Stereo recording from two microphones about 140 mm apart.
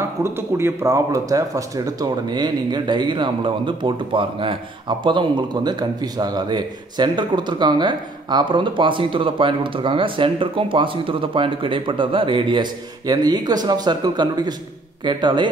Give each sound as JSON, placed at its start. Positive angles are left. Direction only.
{"t": 0.2, "sound": "speech", "side_deg": -20}